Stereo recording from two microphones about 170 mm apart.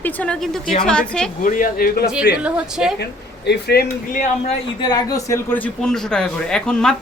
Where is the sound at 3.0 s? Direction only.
75° left (ahead or behind); by 4.3 s 60° left (ahead or behind).